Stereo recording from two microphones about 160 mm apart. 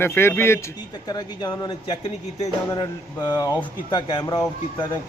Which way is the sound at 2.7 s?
25° left (ahead or behind).